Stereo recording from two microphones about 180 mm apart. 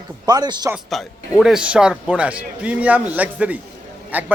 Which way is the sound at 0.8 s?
Centre (ahead or behind).